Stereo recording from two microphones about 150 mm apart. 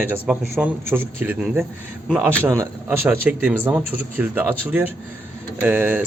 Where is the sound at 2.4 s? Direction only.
15° right (ahead or behind).